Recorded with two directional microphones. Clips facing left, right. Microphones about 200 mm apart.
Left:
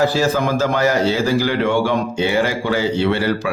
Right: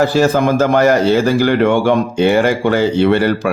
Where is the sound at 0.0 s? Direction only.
55° right (ahead or behind).